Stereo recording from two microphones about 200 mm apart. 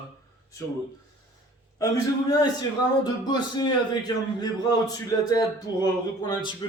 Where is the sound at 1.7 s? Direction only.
20° left (ahead or behind).